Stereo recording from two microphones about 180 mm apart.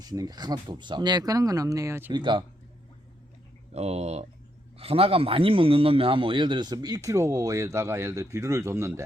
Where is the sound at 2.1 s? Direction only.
25° right (ahead or behind).